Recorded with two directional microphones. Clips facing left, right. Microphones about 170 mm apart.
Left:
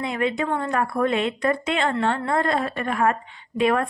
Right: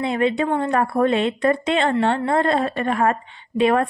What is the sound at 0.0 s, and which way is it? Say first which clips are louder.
A woman's voice: right 4 dB; 30° right (ahead or behind).